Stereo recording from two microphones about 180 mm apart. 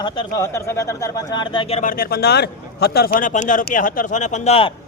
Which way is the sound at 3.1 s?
45° left (ahead or behind).